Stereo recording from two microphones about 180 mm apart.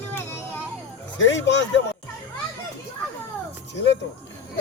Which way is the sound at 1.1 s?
90° left.